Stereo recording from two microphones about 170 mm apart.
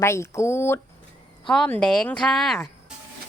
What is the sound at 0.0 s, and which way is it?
A woman's voice, 15° left (ahead or behind).